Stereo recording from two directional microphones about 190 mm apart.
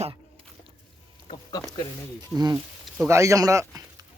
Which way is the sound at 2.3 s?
20° right (ahead or behind).